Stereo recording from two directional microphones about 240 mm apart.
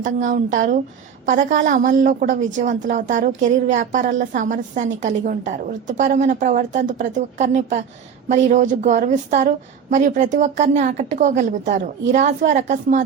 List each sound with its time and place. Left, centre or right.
0.0 s a woman's voice: right